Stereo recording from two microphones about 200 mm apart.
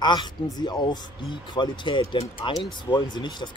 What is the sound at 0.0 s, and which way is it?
Speech, 20° left (ahead or behind).